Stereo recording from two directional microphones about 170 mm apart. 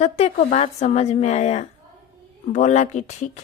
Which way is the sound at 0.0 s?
45° left (ahead or behind).